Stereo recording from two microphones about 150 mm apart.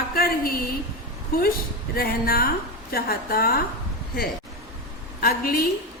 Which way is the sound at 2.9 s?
85° left.